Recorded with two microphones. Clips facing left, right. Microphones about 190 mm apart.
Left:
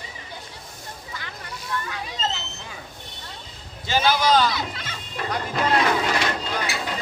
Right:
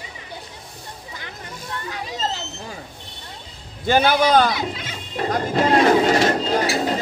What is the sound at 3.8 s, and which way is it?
Speech, 55° right (ahead or behind).